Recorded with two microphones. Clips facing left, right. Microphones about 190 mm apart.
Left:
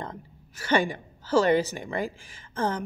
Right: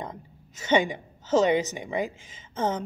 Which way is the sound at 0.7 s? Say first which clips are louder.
Right 1 dB; 20° right (ahead or behind).